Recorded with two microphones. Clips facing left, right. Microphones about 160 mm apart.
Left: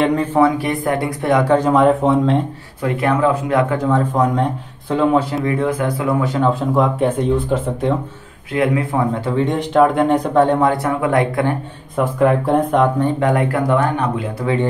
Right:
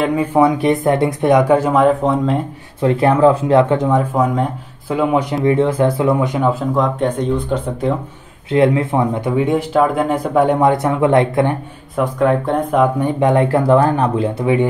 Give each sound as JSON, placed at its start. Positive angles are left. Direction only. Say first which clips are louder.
{"t": 0.0, "sound": "speech", "louder": "right 1 dB", "side_deg": -10}
{"t": 2.8, "sound": "speech", "louder": "right 5 dB", "side_deg": -30}
{"t": 4.1, "sound": "speech", "louder": "even", "side_deg": -5}
{"t": 5.1, "sound": "speech", "louder": "right 2 dB", "side_deg": -20}
{"t": 6.7, "sound": "speech", "louder": "left 1 dB", "side_deg": 5}
{"t": 8.5, "sound": "speech", "louder": "right 4 dB", "side_deg": -25}
{"t": 12.0, "sound": "speech", "louder": "even", "side_deg": 5}
{"t": 13.0, "sound": "speech", "louder": "right 2 dB", "side_deg": -20}